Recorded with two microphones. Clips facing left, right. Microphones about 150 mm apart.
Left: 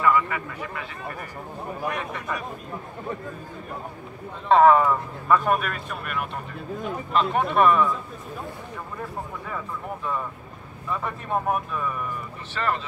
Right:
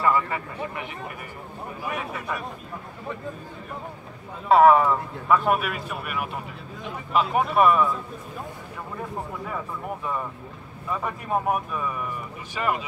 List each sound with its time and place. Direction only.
0.0 s speech: 30° right (ahead or behind)
1.9 s speech: 5° right (ahead or behind)
4.5 s speech: 5° right (ahead or behind)
10.9 s speech: 10° right (ahead or behind)